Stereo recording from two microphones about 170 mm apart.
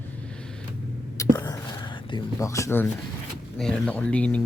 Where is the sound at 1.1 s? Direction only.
20° left (ahead or behind).